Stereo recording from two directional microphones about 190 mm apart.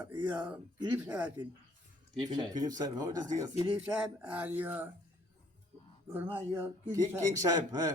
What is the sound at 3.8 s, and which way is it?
Speech, 5° right (ahead or behind).